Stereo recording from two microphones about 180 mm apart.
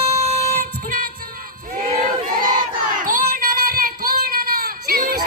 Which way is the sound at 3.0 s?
50° right (ahead or behind).